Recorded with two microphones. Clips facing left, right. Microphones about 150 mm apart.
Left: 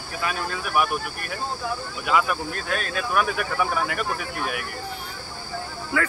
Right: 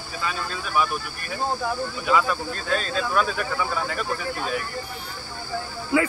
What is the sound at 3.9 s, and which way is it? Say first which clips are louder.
Speech: right 1 dB; 70° left (ahead or behind).